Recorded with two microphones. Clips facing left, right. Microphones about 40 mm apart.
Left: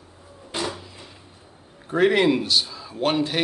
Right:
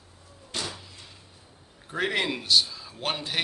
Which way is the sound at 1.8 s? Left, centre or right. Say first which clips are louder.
Left 9 dB; centre.